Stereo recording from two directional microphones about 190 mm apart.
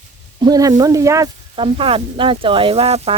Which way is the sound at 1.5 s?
30° right (ahead or behind).